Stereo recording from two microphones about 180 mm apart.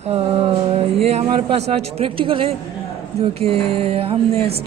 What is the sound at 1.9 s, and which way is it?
Speech, 30° right (ahead or behind).